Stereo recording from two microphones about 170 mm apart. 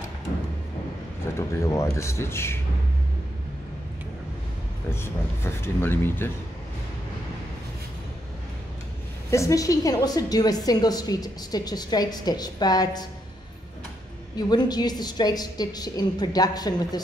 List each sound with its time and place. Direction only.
1.4 s speech: 15° left (ahead or behind)
4.8 s speech: 15° left (ahead or behind)
9.3 s a woman's voice: 20° left (ahead or behind)
14.3 s a woman's voice: 25° left (ahead or behind)